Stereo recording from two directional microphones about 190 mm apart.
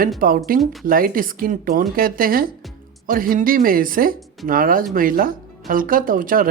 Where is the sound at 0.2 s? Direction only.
50° right (ahead or behind).